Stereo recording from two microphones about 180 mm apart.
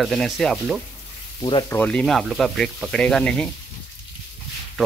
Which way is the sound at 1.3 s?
25° left (ahead or behind).